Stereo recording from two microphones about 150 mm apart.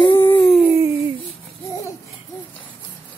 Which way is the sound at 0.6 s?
15° right (ahead or behind).